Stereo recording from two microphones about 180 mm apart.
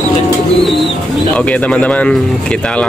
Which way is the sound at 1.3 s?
5° left (ahead or behind).